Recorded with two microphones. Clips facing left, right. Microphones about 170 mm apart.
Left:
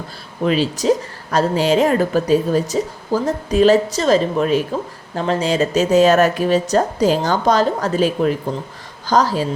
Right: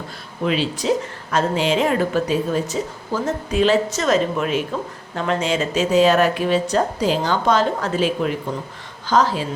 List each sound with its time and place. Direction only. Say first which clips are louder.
0.4 s a woman's voice: left 4 dB; 40° left (ahead or behind)